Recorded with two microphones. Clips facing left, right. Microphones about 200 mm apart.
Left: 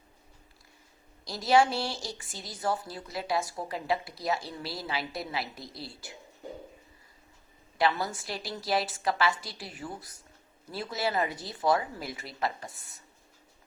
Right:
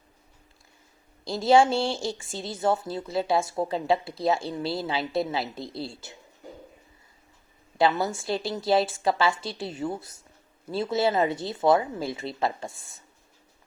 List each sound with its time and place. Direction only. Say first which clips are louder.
1.2 s a woman's voice: right 5 dB; 25° right (ahead or behind)
7.8 s a woman's voice: right 5 dB; 25° right (ahead or behind)